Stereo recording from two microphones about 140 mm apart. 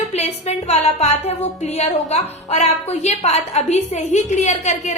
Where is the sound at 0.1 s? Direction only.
50° left (ahead or behind).